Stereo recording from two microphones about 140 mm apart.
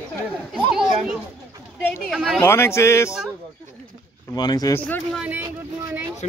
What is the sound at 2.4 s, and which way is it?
Speech, 20° left (ahead or behind).